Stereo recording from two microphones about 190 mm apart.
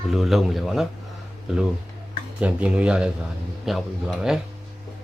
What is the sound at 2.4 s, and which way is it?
Speech, 5° right (ahead or behind).